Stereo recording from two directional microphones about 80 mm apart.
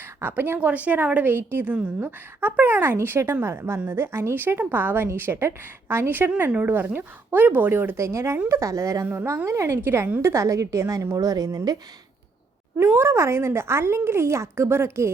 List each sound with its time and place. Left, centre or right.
0.2 s a woman's voice: right
12.7 s speech: right